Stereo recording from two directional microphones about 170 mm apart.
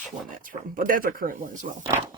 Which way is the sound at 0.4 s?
55° right (ahead or behind).